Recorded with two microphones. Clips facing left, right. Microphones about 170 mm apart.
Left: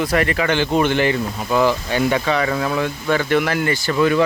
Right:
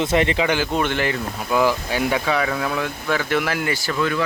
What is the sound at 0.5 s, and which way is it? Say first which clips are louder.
Speech: left 4 dB; centre (ahead or behind).